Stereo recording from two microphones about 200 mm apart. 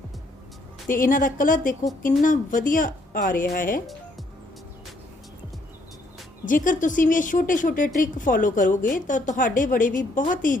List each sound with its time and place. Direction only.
0.9 s speech: 45° left (ahead or behind)
6.4 s a woman's voice: 40° left (ahead or behind)